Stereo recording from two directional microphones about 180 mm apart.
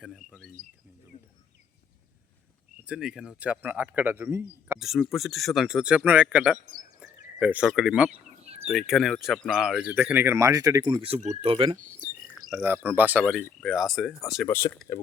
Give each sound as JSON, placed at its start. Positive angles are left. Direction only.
{"t": 0.0, "sound": "speech", "side_deg": 0}
{"t": 2.8, "sound": "speech", "side_deg": -5}
{"t": 4.8, "sound": "speech", "side_deg": 0}
{"t": 12.5, "sound": "speech", "side_deg": -10}
{"t": 14.4, "sound": "speech", "side_deg": 10}